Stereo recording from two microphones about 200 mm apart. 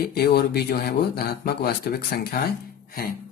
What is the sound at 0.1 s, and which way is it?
A man's voice, 50° left (ahead or behind).